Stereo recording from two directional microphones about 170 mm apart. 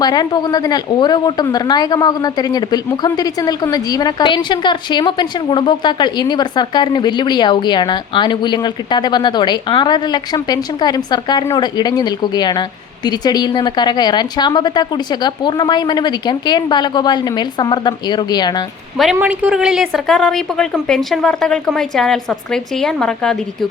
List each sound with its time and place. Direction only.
0.0 s a woman's voice: 25° left (ahead or behind)
19.1 s a woman's voice: 10° right (ahead or behind)